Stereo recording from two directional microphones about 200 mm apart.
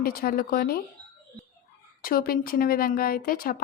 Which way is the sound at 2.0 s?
45° left (ahead or behind).